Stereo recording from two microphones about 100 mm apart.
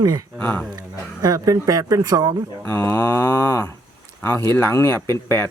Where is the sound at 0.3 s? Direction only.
15° left (ahead or behind).